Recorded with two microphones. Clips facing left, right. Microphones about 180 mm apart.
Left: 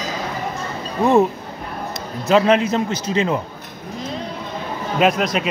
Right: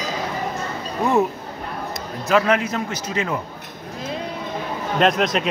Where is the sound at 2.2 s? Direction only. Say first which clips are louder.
Left 4 dB; 25° left (ahead or behind).